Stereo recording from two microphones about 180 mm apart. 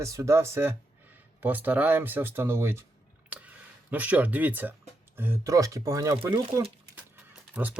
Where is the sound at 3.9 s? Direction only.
10° right (ahead or behind); by 6.6 s 25° right (ahead or behind).